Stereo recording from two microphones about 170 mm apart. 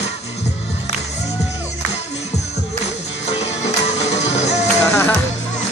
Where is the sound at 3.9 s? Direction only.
40° left (ahead or behind).